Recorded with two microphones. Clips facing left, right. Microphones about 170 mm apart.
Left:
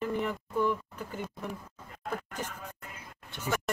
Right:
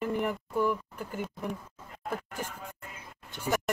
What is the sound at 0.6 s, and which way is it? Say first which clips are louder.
Speech: even; 10° right (ahead or behind).